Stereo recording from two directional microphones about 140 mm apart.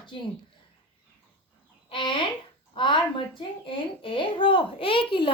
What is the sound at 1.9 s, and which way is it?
Speech, 35° left (ahead or behind).